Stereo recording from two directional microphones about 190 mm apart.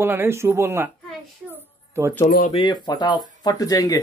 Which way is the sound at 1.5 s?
15° right (ahead or behind).